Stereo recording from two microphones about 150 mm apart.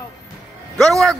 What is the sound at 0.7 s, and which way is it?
Speech, centre (ahead or behind).